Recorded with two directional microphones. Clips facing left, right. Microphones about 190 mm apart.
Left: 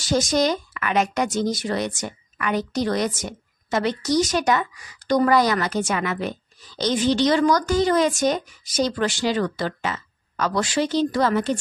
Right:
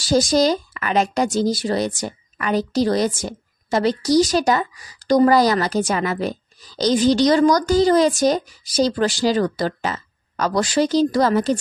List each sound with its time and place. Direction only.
0.0 s a woman's voice: 35° right (ahead or behind)